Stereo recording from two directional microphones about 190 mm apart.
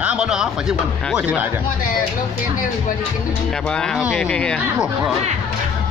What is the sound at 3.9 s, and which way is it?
Speech, centre (ahead or behind).